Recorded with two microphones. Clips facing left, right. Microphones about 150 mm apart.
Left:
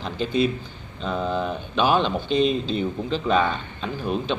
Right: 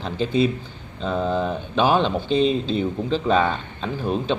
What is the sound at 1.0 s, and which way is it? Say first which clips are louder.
A man's voice: right 3 dB; 30° right (ahead or behind).